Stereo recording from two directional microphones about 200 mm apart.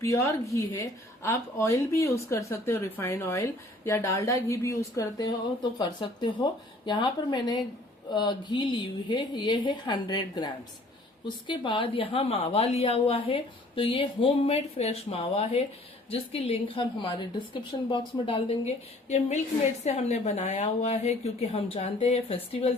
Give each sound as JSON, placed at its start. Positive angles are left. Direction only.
{"t": 0.0, "sound": "a woman's voice", "side_deg": 15}